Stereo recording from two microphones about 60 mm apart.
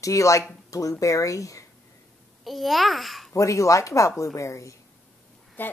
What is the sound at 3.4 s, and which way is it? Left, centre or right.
Speech, left.